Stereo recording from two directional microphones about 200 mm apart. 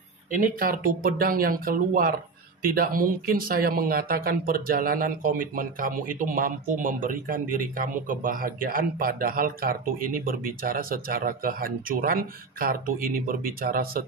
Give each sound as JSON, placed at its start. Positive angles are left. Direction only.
{"t": 0.3, "sound": "speech", "side_deg": -45}